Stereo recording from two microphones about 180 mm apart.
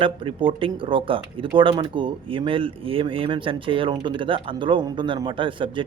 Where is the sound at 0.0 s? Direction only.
30° right (ahead or behind).